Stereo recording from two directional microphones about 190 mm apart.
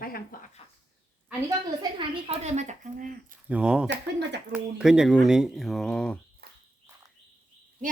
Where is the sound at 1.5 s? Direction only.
25° right (ahead or behind); by 3.3 s 40° right (ahead or behind).